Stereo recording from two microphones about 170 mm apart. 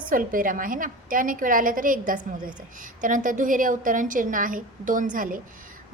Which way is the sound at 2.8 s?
50° right (ahead or behind).